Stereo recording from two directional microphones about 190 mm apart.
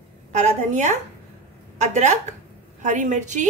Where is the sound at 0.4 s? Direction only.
40° right (ahead or behind).